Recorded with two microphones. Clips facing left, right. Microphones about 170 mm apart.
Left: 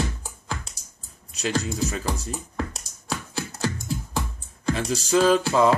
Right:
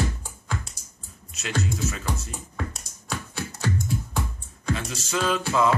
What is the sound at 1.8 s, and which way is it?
Music, 35° left (ahead or behind).